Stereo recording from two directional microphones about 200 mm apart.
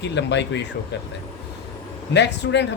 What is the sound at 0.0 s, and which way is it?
Speech, 60° left (ahead or behind).